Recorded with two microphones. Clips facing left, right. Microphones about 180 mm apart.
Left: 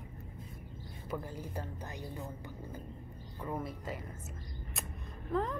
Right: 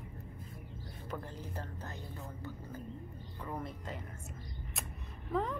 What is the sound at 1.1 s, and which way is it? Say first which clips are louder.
Speech: left 3 dB; 10° left (ahead or behind).